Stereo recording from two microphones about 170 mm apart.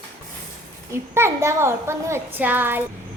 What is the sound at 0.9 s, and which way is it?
A child's voice, 15° right (ahead or behind).